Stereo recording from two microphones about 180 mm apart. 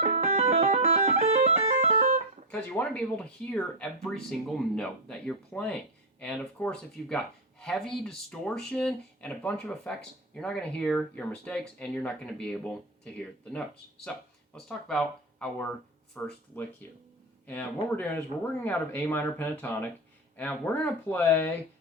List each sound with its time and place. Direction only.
0.0 s music: 45° right (ahead or behind)
2.5 s speech: 10° left (ahead or behind)